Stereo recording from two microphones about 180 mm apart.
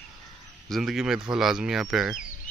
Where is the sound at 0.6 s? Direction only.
Centre (ahead or behind).